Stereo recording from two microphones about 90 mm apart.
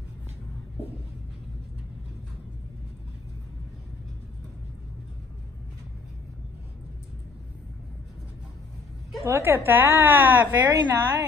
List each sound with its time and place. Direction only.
9.2 s a woman's voice: 30° right (ahead or behind)
10.7 s a woman's voice: 50° right (ahead or behind)